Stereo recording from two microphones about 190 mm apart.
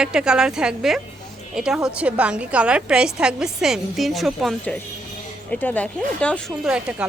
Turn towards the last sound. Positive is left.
turn(degrees=-5)  # may be behind; listen again after turning